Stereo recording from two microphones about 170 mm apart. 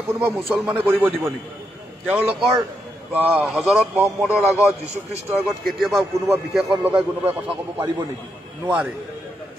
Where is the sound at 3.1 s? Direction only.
10° right (ahead or behind).